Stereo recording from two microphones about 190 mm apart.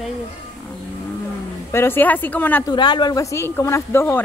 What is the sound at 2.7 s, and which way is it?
Speech, 25° left (ahead or behind).